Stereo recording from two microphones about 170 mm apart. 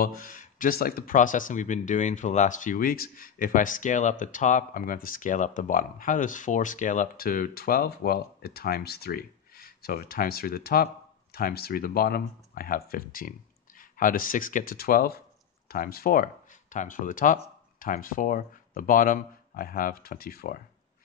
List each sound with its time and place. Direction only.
0.0 s speech: 55° left (ahead or behind)